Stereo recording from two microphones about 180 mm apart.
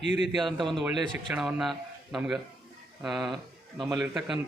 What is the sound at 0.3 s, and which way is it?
A man's voice, centre (ahead or behind).